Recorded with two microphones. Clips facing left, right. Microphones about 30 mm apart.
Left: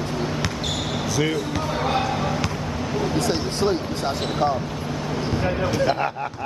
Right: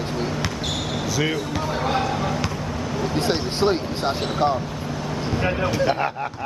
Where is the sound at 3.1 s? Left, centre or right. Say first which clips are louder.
Even; right.